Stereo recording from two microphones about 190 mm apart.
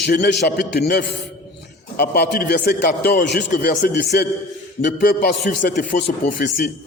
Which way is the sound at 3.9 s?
60° left (ahead or behind).